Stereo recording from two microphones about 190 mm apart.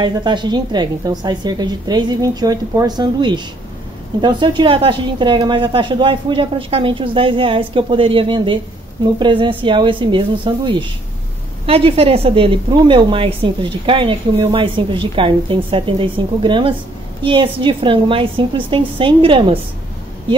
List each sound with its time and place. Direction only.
0.0 s a woman's voice: 25° right (ahead or behind)